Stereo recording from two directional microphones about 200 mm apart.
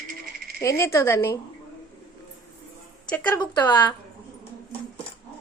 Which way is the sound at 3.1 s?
10° left (ahead or behind).